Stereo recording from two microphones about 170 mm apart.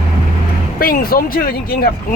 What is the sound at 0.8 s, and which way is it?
Speech, 60° left (ahead or behind).